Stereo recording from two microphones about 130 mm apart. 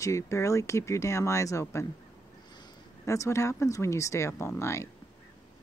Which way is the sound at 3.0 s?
25° left (ahead or behind).